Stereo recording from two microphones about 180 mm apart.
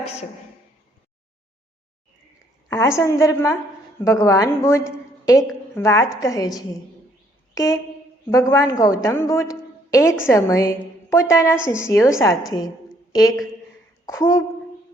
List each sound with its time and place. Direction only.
2.6 s a woman's voice: 20° left (ahead or behind)
7.5 s a sound: 20° left (ahead or behind)
8.3 s a woman's voice: 15° left (ahead or behind)
14.0 s a woman's voice: 20° left (ahead or behind)